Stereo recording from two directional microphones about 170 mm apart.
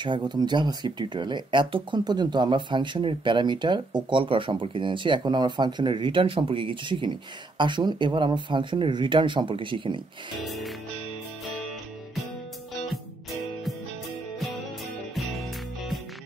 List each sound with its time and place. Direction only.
0.0 s speech: 25° right (ahead or behind)
10.4 s music: centre (ahead or behind)
12.9 s music: centre (ahead or behind)
15.1 s music: centre (ahead or behind)